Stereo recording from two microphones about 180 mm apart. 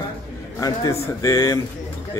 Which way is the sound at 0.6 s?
20° left (ahead or behind).